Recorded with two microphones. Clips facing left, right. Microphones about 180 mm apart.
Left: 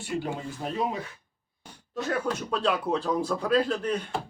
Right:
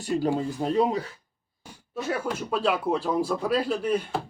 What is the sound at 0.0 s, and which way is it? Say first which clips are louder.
Speech: right 6 dB; 35° right (ahead or behind).